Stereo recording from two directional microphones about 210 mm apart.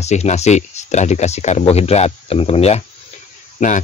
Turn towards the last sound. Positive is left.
turn(degrees=35)  # may be behind; listen again after turning